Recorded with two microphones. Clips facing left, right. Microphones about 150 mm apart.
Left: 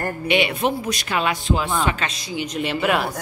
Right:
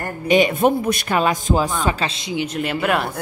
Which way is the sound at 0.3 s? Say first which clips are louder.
Right 6 dB; 45° right (ahead or behind).